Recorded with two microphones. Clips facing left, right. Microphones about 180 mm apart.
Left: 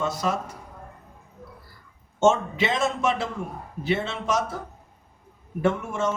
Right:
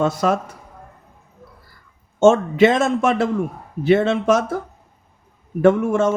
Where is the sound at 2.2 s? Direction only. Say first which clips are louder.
Right 8 dB; 50° right (ahead or behind).